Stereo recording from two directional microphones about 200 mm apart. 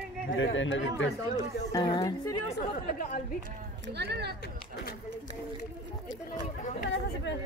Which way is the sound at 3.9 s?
55° right (ahead or behind).